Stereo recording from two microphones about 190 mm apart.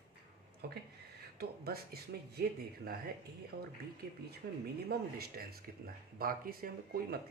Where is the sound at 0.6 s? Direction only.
55° right (ahead or behind).